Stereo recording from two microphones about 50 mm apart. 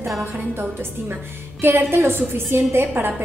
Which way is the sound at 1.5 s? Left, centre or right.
Right.